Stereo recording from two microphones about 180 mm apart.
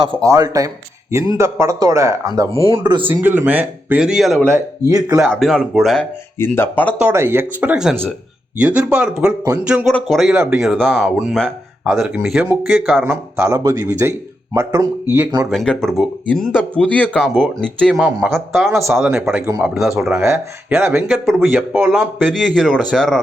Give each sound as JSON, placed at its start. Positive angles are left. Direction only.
{"t": 0.0, "sound": "speech", "side_deg": -20}
{"t": 2.5, "sound": "speech", "side_deg": -30}
{"t": 3.1, "sound": "speech", "side_deg": -10}
{"t": 4.4, "sound": "speech", "side_deg": -15}
{"t": 5.3, "sound": "speech", "side_deg": 0}
{"t": 7.0, "sound": "speech", "side_deg": -15}
{"t": 10.3, "sound": "speech", "side_deg": -10}
{"t": 10.6, "sound": "speech", "side_deg": 0}
{"t": 15.4, "sound": "speech", "side_deg": 0}
{"t": 19.5, "sound": "speech", "side_deg": -15}
{"t": 21.1, "sound": "speech", "side_deg": 0}